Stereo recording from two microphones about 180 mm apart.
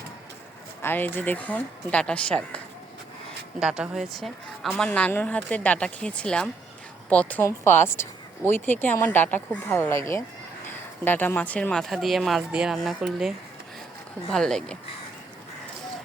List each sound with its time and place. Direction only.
0.8 s speech: 10° left (ahead or behind)
3.6 s a woman's voice: 5° right (ahead or behind)